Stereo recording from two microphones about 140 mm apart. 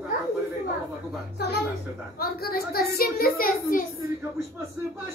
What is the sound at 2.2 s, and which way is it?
A child's voice, 90° left.